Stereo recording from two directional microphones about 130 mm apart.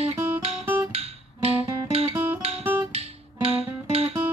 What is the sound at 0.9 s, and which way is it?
Guitar, 50° right (ahead or behind).